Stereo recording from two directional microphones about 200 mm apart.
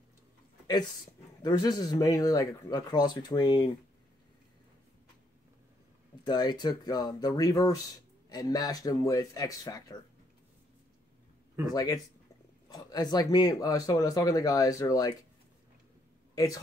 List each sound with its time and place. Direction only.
1.4 s speech: 20° left (ahead or behind)
6.2 s speech: 20° left (ahead or behind)
11.7 s speech: 20° left (ahead or behind)